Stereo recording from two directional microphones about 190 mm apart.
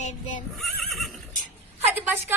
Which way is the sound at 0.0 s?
40° left (ahead or behind).